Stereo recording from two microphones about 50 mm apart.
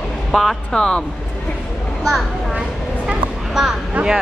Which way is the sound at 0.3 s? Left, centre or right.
Centre.